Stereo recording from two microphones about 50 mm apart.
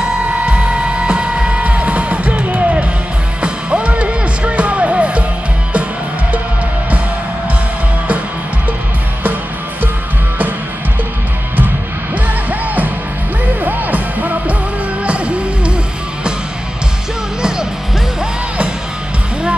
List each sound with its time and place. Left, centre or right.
0.5 s music: right
12.4 s music: right
15.0 s music: right